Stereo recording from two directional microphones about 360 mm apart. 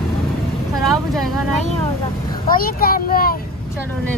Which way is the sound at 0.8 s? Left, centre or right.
Centre.